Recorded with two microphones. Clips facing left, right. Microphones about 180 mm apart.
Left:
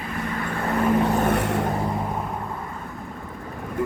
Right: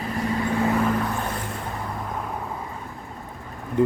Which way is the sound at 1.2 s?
70° left (ahead or behind).